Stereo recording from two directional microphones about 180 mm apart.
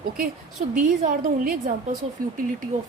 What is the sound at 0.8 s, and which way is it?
A woman's voice, 45° right (ahead or behind).